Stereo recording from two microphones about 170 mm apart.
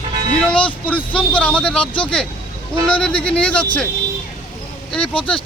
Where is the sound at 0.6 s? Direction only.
30° left (ahead or behind).